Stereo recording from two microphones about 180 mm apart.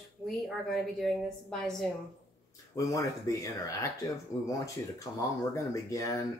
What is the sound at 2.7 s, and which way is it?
Speech, 20° left (ahead or behind).